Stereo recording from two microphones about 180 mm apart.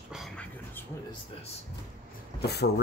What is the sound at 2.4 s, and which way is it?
Speech, 65° left (ahead or behind).